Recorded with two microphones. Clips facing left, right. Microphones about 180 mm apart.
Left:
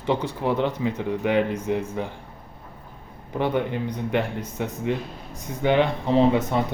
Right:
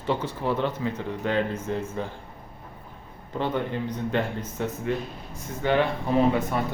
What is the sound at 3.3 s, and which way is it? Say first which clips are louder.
Speech: left 3 dB; 15° left (ahead or behind).